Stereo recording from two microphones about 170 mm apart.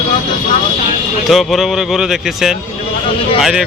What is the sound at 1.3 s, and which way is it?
Speech, centre (ahead or behind).